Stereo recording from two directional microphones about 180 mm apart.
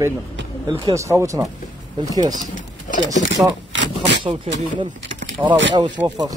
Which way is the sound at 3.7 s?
90° right.